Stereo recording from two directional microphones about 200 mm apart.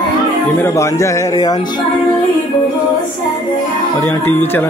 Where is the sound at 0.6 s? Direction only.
15° left (ahead or behind).